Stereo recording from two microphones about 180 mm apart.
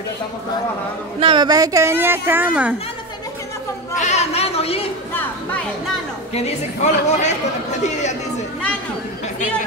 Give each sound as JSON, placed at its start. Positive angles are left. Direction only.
{"t": 1.2, "sound": "a woman's voice", "side_deg": -25}
{"t": 3.9, "sound": "speech", "side_deg": 40}
{"t": 5.1, "sound": "speech", "side_deg": 10}
{"t": 6.3, "sound": "speech", "side_deg": 40}